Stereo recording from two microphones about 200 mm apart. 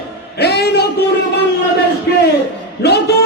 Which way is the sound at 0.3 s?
55° left (ahead or behind).